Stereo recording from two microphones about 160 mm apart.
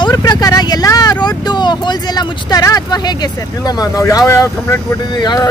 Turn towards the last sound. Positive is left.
turn(degrees=25)  # may be behind; listen again after turning